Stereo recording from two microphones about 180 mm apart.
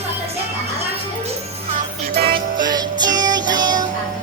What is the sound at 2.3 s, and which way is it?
Music, 25° right (ahead or behind).